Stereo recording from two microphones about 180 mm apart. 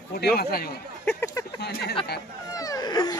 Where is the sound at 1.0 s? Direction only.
10° left (ahead or behind).